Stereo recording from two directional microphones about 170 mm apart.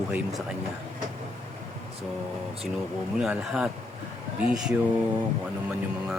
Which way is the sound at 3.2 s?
5° right (ahead or behind).